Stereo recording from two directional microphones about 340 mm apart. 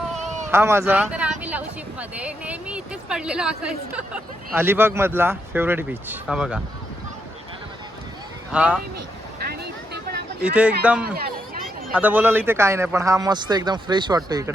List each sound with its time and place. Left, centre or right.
0.1 s speech: centre
8.5 s speech: centre
9.4 s vehicle: right
10.4 s a man's voice: centre